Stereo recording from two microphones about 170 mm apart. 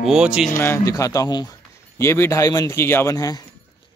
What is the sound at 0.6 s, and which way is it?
A man's voice, 15° left (ahead or behind).